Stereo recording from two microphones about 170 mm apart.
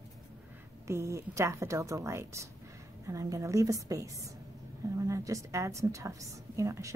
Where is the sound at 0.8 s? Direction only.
15° right (ahead or behind).